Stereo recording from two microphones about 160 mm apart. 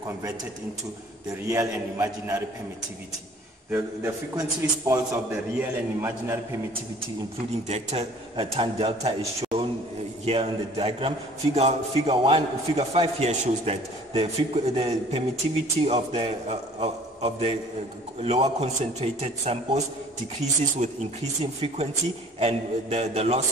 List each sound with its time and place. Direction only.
1.5 s a man's voice: 20° right (ahead or behind)
3.7 s a man's voice: 20° right (ahead or behind)
7.6 s a man's voice: 40° right (ahead or behind)